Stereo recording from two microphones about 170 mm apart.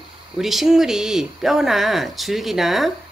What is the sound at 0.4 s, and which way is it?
Speech, centre (ahead or behind).